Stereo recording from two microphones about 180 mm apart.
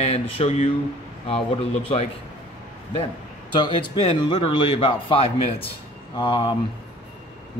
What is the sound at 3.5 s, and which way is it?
Speech, 25° left (ahead or behind).